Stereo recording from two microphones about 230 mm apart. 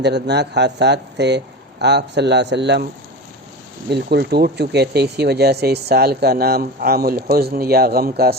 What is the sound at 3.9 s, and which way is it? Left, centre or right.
Speech, right.